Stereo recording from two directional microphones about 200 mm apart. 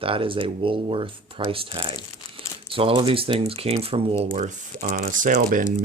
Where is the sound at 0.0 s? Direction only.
25° right (ahead or behind).